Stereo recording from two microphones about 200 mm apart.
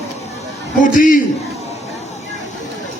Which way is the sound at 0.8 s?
40° left (ahead or behind).